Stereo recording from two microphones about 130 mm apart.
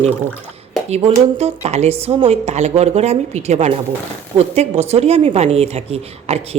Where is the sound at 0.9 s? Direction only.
55° right (ahead or behind).